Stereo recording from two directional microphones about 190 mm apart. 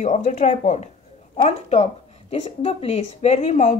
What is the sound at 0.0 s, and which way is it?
A woman's voice, 40° left (ahead or behind).